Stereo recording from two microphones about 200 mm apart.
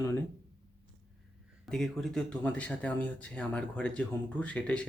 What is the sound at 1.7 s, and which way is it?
Speech, 5° left (ahead or behind).